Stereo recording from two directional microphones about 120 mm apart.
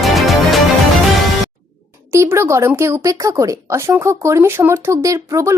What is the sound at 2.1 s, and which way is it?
Speech, 20° right (ahead or behind).